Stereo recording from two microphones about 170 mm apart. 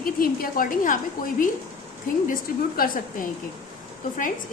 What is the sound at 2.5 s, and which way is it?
Speech, 55° left (ahead or behind).